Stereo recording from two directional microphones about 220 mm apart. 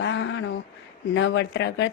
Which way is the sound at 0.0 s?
55° left (ahead or behind).